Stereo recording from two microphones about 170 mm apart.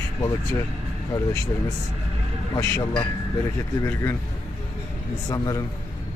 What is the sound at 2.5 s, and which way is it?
Speech, 20° left (ahead or behind).